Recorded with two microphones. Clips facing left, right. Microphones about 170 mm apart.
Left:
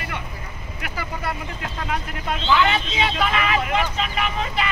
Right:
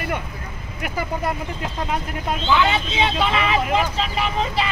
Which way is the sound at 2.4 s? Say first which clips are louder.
Even; 15° right (ahead or behind).